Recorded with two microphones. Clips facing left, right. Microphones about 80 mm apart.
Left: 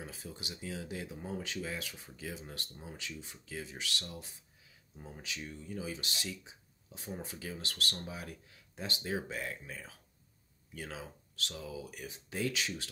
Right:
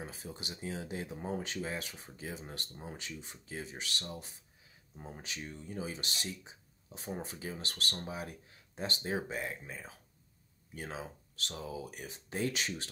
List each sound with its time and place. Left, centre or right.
0.0 s speech: right